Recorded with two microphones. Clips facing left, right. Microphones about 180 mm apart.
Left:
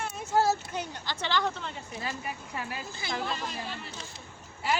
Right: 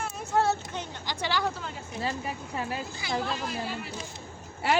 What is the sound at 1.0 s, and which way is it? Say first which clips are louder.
Speech: right 1 dB; 10° right (ahead or behind).